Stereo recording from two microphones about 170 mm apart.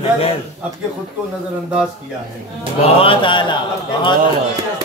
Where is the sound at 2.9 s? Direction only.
30° left (ahead or behind).